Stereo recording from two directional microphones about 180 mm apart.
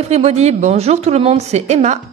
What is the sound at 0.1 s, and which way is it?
Speech, 35° right (ahead or behind).